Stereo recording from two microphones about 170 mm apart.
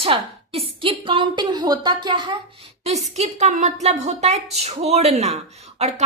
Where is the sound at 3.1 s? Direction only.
40° right (ahead or behind).